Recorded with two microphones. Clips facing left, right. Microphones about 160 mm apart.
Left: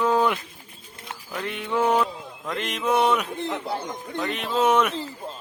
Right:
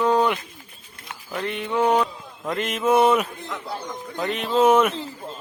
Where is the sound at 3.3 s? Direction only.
30° left (ahead or behind).